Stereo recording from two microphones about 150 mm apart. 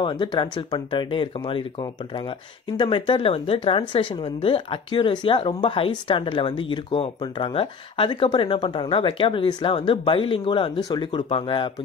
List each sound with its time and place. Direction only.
0.0 s speech: 30° left (ahead or behind)